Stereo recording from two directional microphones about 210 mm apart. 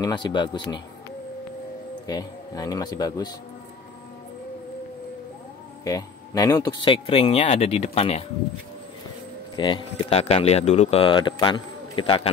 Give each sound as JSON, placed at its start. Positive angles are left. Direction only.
{"t": 0.0, "sound": "speech", "side_deg": 20}
{"t": 2.0, "sound": "speech", "side_deg": 20}
{"t": 5.9, "sound": "speech", "side_deg": 15}
{"t": 9.6, "sound": "speech", "side_deg": 20}